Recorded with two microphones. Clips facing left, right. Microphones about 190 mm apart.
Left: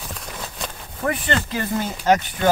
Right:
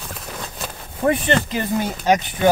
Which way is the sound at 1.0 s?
20° right (ahead or behind).